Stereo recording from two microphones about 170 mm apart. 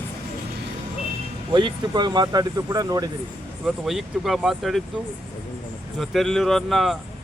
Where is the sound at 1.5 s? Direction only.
25° right (ahead or behind).